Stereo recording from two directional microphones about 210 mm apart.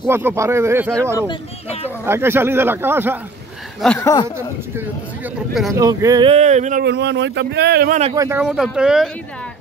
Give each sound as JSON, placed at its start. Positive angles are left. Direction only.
{"t": 0.0, "sound": "speech", "side_deg": -10}
{"t": 1.2, "sound": "speech", "side_deg": 25}
{"t": 2.0, "sound": "speech", "side_deg": -10}
{"t": 3.8, "sound": "speech", "side_deg": 5}
{"t": 4.4, "sound": "speech", "side_deg": -10}
{"t": 5.8, "sound": "speech", "side_deg": -15}
{"t": 6.8, "sound": "speech", "side_deg": -55}
{"t": 8.0, "sound": "speech", "side_deg": -20}
{"t": 8.5, "sound": "speech", "side_deg": 0}